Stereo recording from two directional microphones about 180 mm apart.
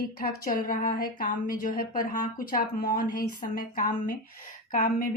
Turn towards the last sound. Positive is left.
turn(degrees=50)  # may be behind; listen again after turning